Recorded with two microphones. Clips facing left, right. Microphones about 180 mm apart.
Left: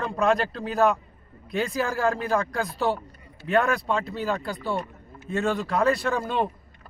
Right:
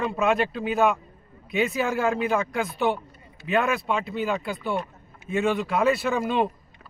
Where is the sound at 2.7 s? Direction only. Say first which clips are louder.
Right 1 dB; 20° right (ahead or behind).